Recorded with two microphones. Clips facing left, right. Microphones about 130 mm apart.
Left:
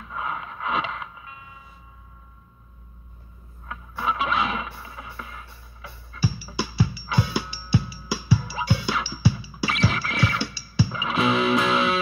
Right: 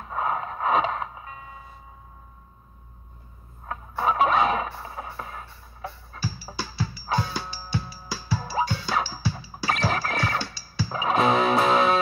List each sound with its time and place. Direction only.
0.0 s music: 40° right (ahead or behind)
3.6 s music: 40° right (ahead or behind)
6.5 s music: 10° left (ahead or behind)
8.4 s music: 45° right (ahead or behind)
8.6 s music: 10° left (ahead or behind)
8.9 s music: 45° right (ahead or behind)